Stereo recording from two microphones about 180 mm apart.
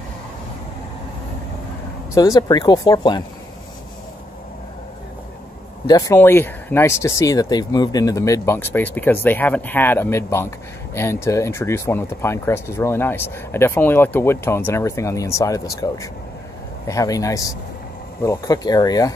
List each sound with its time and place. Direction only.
2.1 s speech: 20° left (ahead or behind)
5.9 s speech: 20° left (ahead or behind)